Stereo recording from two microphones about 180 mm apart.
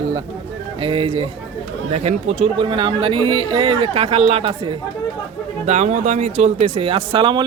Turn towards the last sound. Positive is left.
turn(degrees=-30)  # may be behind; listen again after turning